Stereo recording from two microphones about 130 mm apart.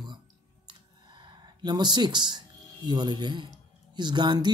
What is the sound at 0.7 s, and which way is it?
Speech, 35° right (ahead or behind).